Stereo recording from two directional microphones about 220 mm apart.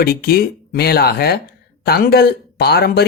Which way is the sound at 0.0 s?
45° left (ahead or behind).